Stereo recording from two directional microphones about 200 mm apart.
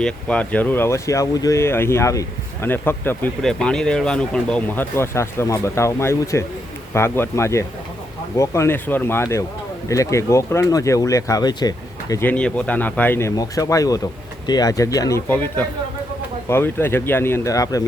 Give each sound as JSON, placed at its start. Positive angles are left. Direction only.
{"t": 0.0, "sound": "speech", "side_deg": 5}